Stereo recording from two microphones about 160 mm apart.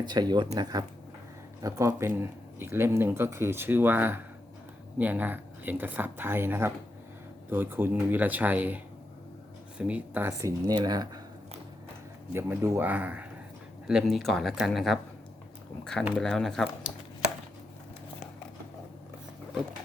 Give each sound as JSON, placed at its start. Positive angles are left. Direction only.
{"t": 0.0, "sound": "speech", "side_deg": -25}
{"t": 12.3, "sound": "speech", "side_deg": -15}